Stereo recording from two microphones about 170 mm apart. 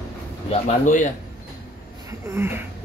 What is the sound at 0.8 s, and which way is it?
Speech, 50° left (ahead or behind).